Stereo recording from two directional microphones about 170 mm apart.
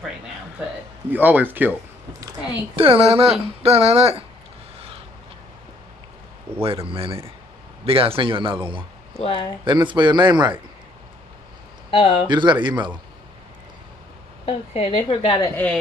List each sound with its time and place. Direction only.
1.1 s speech: 10° right (ahead or behind)
2.7 s a man's voice: 35° right (ahead or behind)
6.6 s a man's voice: 35° right (ahead or behind)
9.2 s speech: 30° left (ahead or behind)
9.7 s a man's voice: 25° right (ahead or behind)
11.9 s speech: 35° left (ahead or behind)
12.3 s a man's voice: 25° right (ahead or behind)
14.4 s a woman's voice: 35° left (ahead or behind)
15.5 s a woman's voice: 10° left (ahead or behind)